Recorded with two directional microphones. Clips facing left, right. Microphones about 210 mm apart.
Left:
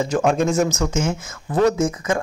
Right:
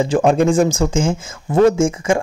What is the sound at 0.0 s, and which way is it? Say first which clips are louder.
Speech: right 4 dB; 30° right (ahead or behind).